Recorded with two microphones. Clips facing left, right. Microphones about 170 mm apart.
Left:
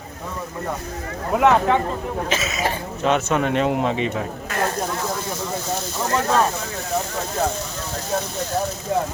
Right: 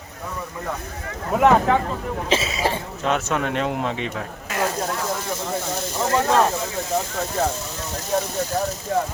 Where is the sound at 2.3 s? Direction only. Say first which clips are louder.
Right 4 dB; 30° right (ahead or behind).